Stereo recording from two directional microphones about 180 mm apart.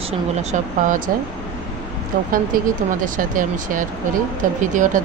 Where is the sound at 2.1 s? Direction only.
50° right (ahead or behind).